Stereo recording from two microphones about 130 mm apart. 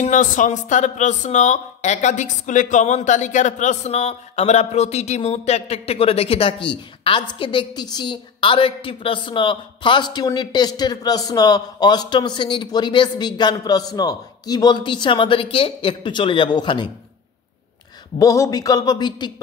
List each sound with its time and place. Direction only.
0.0 s speech: 80° left; by 16.9 s 35° left (ahead or behind)
18.2 s speech: 25° left (ahead or behind)